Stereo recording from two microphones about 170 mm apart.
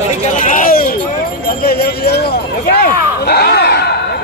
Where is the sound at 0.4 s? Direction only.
50° left (ahead or behind).